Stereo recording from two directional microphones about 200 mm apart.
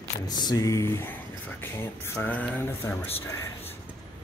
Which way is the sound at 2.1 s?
10° left (ahead or behind).